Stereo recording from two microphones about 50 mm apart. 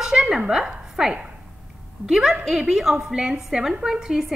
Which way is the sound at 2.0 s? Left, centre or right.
Centre.